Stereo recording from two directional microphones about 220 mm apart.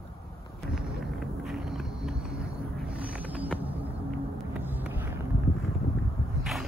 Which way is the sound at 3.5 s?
10° right (ahead or behind).